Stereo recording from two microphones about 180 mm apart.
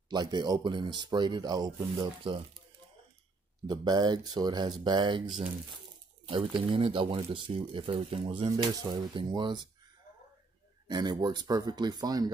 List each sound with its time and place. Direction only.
0.1 s speech: 25° right (ahead or behind)
3.6 s speech: 25° right (ahead or behind)
10.9 s speech: 25° right (ahead or behind)